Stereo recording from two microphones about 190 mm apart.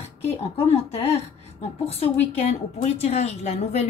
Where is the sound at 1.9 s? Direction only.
30° left (ahead or behind).